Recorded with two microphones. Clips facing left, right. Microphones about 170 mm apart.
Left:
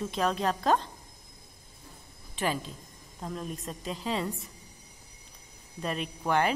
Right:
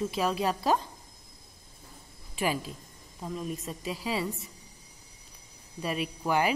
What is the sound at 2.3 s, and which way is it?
A woman's voice, 10° right (ahead or behind).